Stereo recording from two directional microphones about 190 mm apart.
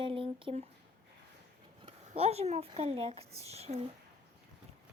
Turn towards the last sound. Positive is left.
turn(degrees=-35)  # may be behind; listen again after turning